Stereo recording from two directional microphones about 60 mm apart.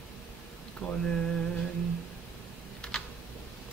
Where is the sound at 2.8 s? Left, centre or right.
Centre.